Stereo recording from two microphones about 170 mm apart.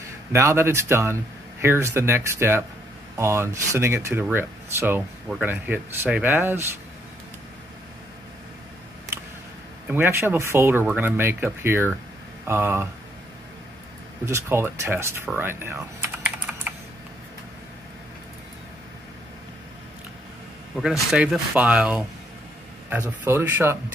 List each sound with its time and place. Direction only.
0.3 s speech: 15° right (ahead or behind)
9.8 s speech: 10° right (ahead or behind)
14.2 s speech: 15° right (ahead or behind)
15.2 s typing: 15° right (ahead or behind)
20.7 s speech: centre (ahead or behind)